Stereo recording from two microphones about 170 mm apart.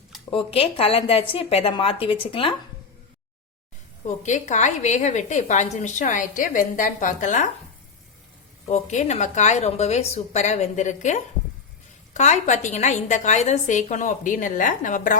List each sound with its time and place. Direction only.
0.3 s a woman's voice: 35° left (ahead or behind)
4.0 s a woman's voice: 45° left (ahead or behind)
8.6 s a woman's voice: 45° left (ahead or behind)